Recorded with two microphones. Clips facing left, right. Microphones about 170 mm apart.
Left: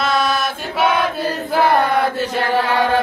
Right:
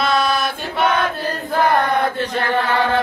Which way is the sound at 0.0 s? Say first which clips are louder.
Even; 5° left (ahead or behind).